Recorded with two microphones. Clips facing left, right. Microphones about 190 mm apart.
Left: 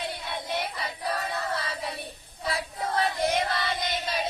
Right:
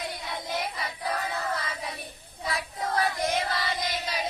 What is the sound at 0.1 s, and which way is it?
Music, 25° left (ahead or behind).